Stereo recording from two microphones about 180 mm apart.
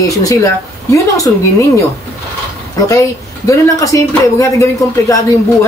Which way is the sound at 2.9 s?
20° left (ahead or behind).